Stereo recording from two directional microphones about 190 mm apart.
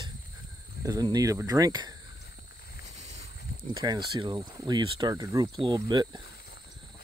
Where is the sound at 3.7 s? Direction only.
25° right (ahead or behind).